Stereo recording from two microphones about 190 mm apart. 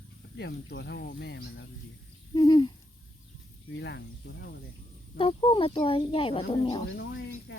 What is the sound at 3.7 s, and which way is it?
Speech, 65° left (ahead or behind).